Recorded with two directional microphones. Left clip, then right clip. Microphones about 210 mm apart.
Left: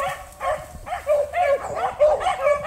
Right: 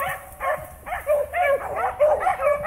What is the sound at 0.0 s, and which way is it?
Dog, 5° right (ahead or behind).